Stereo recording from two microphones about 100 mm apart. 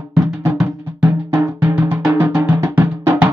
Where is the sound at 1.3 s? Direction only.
25° right (ahead or behind).